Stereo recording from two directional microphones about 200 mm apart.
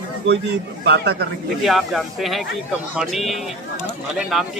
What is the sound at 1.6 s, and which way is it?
Speech, centre (ahead or behind).